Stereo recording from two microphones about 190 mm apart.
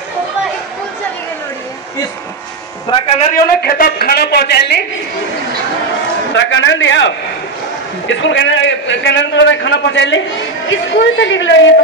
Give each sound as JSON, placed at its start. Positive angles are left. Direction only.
{"t": 2.9, "sound": "a man's voice", "side_deg": 25}
{"t": 3.3, "sound": "a woman's voice", "side_deg": 50}
{"t": 6.3, "sound": "a man's voice", "side_deg": 75}